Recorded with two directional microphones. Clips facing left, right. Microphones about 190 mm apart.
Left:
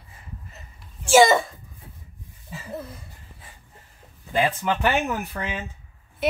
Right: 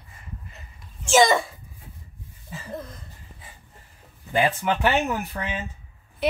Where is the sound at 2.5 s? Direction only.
5° left (ahead or behind).